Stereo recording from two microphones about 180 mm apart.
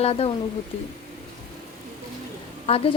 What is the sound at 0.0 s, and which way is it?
Speech, 35° left (ahead or behind).